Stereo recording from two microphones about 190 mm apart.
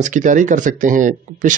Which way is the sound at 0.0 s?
40° right (ahead or behind).